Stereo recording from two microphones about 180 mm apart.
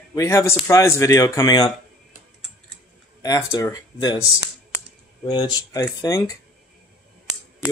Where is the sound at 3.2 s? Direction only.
20° left (ahead or behind).